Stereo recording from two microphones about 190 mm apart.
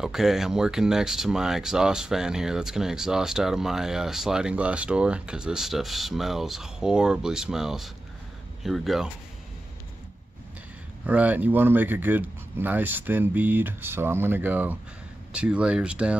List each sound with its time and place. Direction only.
0.0 s speech: centre (ahead or behind)
11.1 s speech: 5° right (ahead or behind)